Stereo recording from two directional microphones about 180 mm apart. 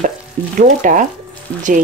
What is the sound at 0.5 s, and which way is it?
Speech, 45° right (ahead or behind).